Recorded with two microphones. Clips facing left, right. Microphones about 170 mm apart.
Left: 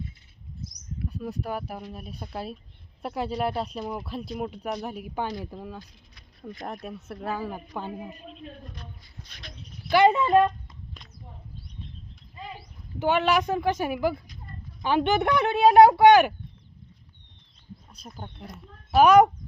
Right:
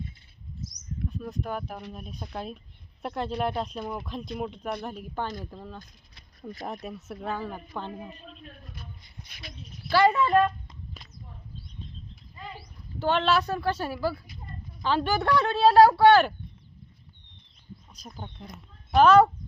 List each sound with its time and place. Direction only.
0.9 s speech: 5° left (ahead or behind)
6.6 s speech: centre (ahead or behind)
8.6 s a sound: 5° right (ahead or behind)
9.9 s speech: 20° left (ahead or behind)
13.0 s speech: 15° left (ahead or behind)
17.9 s speech: centre (ahead or behind)